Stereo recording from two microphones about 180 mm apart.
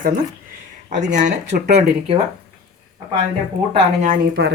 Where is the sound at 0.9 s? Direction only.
40° right (ahead or behind).